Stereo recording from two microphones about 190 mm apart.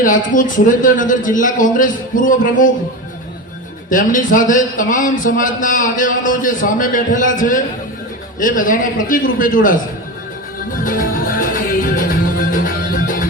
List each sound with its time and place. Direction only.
0.0 s a man's voice: 45° left (ahead or behind)
3.8 s a man's voice: 45° left (ahead or behind)
10.7 s music: 45° left (ahead or behind)